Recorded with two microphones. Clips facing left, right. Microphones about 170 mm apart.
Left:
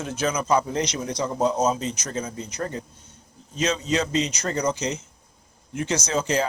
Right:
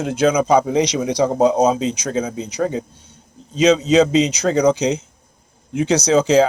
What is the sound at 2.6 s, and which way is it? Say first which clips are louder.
Speech: right 10 dB; 90° right.